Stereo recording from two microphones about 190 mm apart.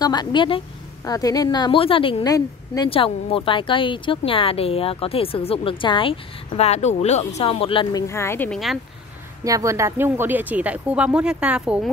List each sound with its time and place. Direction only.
0.0 s a woman's voice: 20° left (ahead or behind)
2.9 s a woman's voice: 30° left (ahead or behind)
8.1 s speech: 15° left (ahead or behind)
9.4 s speech: 15° right (ahead or behind)